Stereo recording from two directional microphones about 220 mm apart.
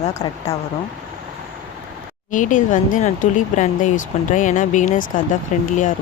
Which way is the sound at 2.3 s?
35° left (ahead or behind).